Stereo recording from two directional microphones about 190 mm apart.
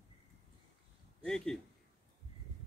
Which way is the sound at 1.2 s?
5° left (ahead or behind).